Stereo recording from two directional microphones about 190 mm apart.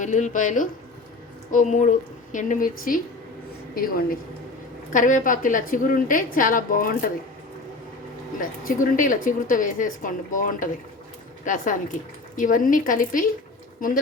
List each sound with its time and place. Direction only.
0.0 s a woman's voice: 40° left (ahead or behind)
8.4 s a woman's voice: 45° left (ahead or behind)